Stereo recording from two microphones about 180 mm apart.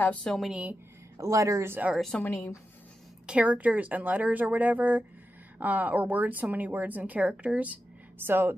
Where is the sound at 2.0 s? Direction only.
5° left (ahead or behind).